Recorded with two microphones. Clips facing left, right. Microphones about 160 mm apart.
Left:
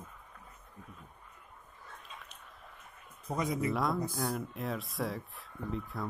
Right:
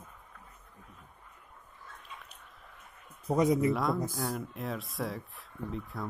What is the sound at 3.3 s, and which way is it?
Speech, 35° right (ahead or behind).